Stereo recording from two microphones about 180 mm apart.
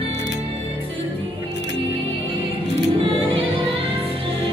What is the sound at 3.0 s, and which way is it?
Music, 30° right (ahead or behind).